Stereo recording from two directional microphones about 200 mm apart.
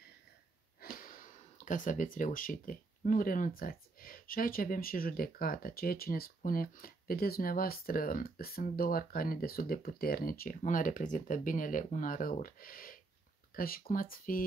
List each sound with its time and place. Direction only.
0.7 s speech: 45° left (ahead or behind)